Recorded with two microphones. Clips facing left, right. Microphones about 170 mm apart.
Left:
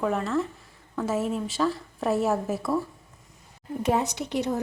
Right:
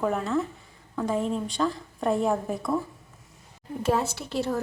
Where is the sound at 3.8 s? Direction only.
20° left (ahead or behind).